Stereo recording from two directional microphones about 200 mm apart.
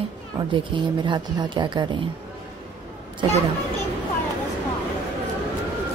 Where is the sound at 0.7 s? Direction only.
25° right (ahead or behind).